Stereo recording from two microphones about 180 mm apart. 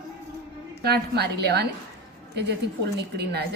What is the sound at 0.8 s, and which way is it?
A woman's voice, 60° right (ahead or behind).